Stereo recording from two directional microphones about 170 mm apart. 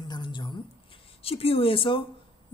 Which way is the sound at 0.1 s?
25° left (ahead or behind).